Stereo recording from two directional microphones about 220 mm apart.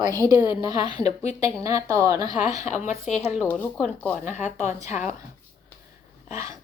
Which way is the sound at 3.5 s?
5° left (ahead or behind).